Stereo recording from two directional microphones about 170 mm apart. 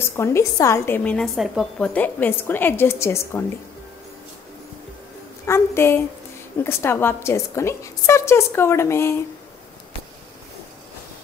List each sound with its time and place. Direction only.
0.0 s a woman's voice: 15° left (ahead or behind)
5.5 s a woman's voice: 15° left (ahead or behind)